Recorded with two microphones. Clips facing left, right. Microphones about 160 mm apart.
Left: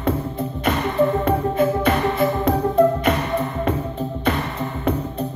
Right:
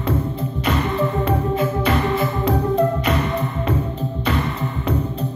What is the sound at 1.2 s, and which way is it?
Music, 50° left (ahead or behind).